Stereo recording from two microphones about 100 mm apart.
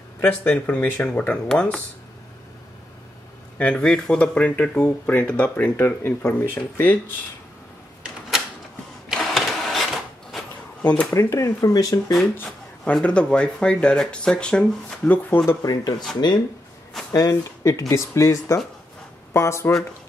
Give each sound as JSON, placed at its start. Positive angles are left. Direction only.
{"t": 0.2, "sound": "speech", "side_deg": 10}
{"t": 3.5, "sound": "speech", "side_deg": 10}
{"t": 9.1, "sound": "sewing machine", "side_deg": 0}
{"t": 10.8, "sound": "speech", "side_deg": 15}
{"t": 11.1, "sound": "speech", "side_deg": 30}
{"t": 12.9, "sound": "speech", "side_deg": 10}
{"t": 15.6, "sound": "speech", "side_deg": 40}
{"t": 17.1, "sound": "speech", "side_deg": 35}